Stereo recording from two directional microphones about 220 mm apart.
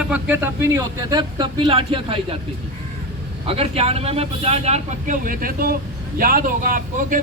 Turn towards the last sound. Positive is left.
turn(degrees=-40)  # may be behind; listen again after turning